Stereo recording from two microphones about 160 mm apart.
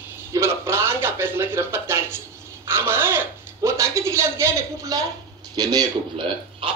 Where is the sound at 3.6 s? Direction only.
20° right (ahead or behind).